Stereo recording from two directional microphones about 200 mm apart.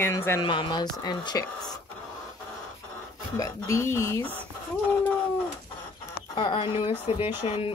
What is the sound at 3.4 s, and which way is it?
Speech, 15° left (ahead or behind).